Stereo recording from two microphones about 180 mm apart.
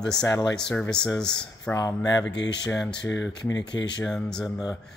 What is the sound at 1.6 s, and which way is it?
Speech, 15° left (ahead or behind).